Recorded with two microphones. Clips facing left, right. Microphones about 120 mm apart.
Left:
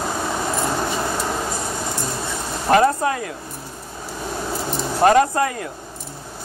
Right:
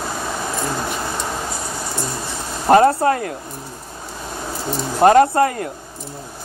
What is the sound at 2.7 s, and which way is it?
Speech, 35° right (ahead or behind).